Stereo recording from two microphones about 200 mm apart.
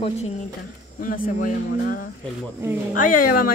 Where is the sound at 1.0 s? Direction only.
45° left (ahead or behind).